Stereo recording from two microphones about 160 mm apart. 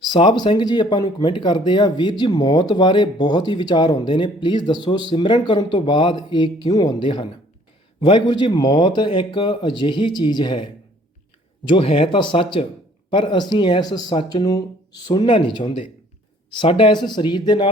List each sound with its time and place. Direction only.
0.1 s speech: 30° left (ahead or behind)
11.7 s speech: 35° left (ahead or behind)
15.6 s speech: 45° left (ahead or behind)
16.6 s speech: 30° left (ahead or behind)